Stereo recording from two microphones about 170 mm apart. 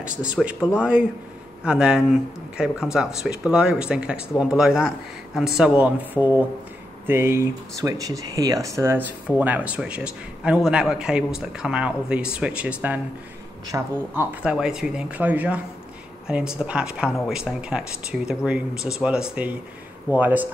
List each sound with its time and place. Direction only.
0.0 s a man's voice: 5° right (ahead or behind)
6.2 s speech: 15° left (ahead or behind)
7.1 s a man's voice: 15° right (ahead or behind)
14.4 s a man's voice: 5° right (ahead or behind)